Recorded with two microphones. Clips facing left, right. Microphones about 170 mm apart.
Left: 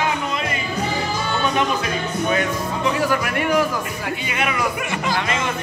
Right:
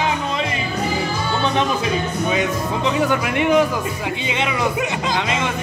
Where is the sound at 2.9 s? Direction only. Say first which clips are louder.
Right 2 dB; 20° right (ahead or behind).